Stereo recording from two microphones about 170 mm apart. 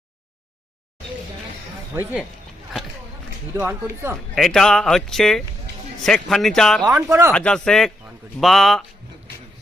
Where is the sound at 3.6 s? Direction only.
10° right (ahead or behind).